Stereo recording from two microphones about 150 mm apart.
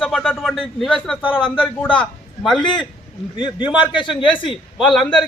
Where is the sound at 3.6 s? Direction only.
10° right (ahead or behind).